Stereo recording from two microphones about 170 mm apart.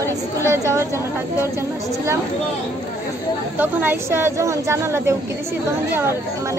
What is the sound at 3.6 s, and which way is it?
A woman's voice, 10° right (ahead or behind).